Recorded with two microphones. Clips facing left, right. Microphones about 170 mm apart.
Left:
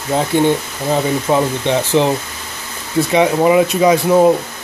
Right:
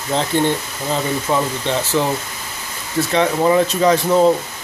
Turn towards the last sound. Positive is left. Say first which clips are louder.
# left 3 dB
turn(degrees=10)  # may be behind; listen again after turning